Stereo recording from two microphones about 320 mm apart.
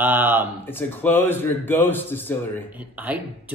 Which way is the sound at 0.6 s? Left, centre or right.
Centre.